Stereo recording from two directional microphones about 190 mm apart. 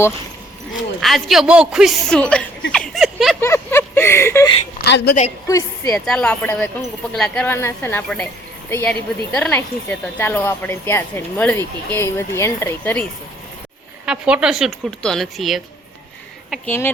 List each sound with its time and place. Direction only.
1.0 s a woman's voice: centre (ahead or behind)
2.7 s a sound: centre (ahead or behind)
3.4 s a sound: 15° left (ahead or behind)
4.8 s a woman's voice: 60° left (ahead or behind)
5.5 s a woman's voice: 15° left (ahead or behind)
5.9 s a woman's voice: 5° left (ahead or behind)
14.0 s a woman's voice: 5° right (ahead or behind)
16.6 s a woman's voice: 10° left (ahead or behind)